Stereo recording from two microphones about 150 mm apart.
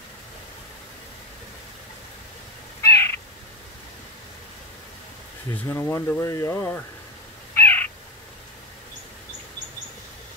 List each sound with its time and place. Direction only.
2.8 s bird: 20° left (ahead or behind)
5.7 s speech: 15° left (ahead or behind)
7.5 s owl: 15° left (ahead or behind)